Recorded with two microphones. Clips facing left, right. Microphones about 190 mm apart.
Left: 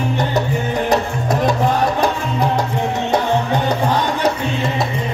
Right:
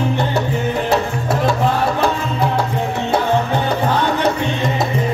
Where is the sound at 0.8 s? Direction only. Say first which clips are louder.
Even; 15° left (ahead or behind).